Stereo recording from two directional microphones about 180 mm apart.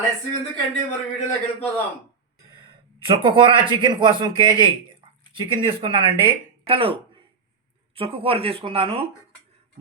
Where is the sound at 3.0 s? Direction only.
30° right (ahead or behind).